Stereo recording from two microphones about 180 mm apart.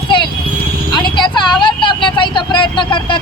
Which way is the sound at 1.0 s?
25° left (ahead or behind).